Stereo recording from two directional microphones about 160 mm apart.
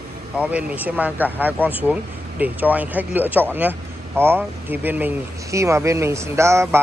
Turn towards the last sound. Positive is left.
turn(degrees=-15)  # may be behind; listen again after turning